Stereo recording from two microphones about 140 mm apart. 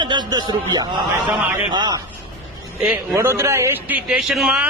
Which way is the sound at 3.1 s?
15° right (ahead or behind).